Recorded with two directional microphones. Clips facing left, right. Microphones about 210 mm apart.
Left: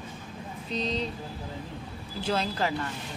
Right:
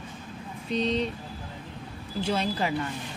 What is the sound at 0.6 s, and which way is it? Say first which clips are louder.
Speech: right 4 dB; 35° left (ahead or behind).